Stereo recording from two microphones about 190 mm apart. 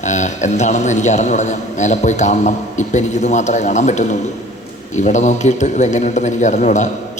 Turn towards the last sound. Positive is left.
turn(degrees=40)  # may be behind; listen again after turning